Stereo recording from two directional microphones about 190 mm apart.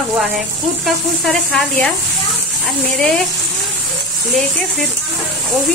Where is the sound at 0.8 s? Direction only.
Centre (ahead or behind).